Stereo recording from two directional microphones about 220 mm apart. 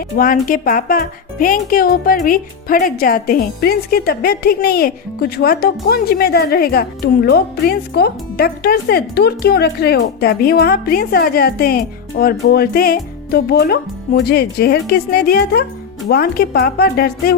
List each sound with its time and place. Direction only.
0.2 s speech: 40° left (ahead or behind)